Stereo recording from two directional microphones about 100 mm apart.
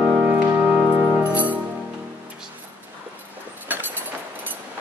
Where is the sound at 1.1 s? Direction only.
15° right (ahead or behind).